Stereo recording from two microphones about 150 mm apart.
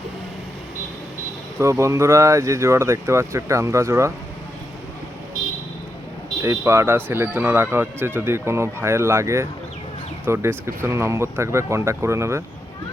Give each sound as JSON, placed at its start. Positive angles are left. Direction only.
{"t": 1.5, "sound": "speech", "side_deg": -20}
{"t": 6.4, "sound": "speech", "side_deg": -20}